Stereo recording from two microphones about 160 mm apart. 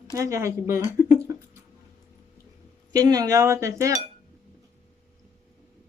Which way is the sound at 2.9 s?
25° right (ahead or behind).